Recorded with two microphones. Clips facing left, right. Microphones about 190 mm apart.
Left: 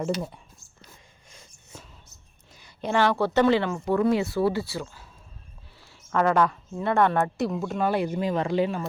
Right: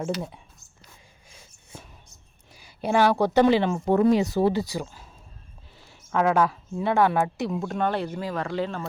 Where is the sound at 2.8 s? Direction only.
10° right (ahead or behind).